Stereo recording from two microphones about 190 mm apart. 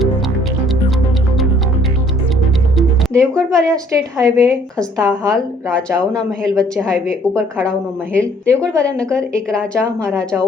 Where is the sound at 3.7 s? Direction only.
20° right (ahead or behind).